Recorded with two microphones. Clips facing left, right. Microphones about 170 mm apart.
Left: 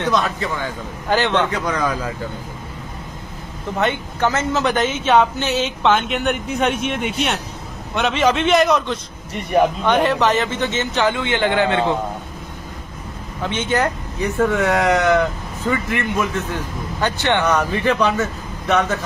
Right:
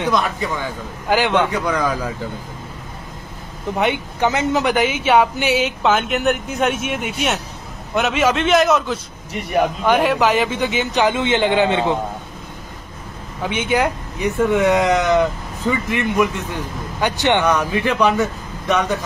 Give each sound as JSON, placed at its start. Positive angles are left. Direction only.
{"t": 0.0, "sound": "a man's voice", "side_deg": -15}
{"t": 3.7, "sound": "a man's voice", "side_deg": -15}
{"t": 13.4, "sound": "a man's voice", "side_deg": -10}